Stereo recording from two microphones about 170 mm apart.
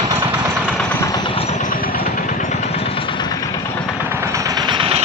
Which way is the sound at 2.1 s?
45° left (ahead or behind).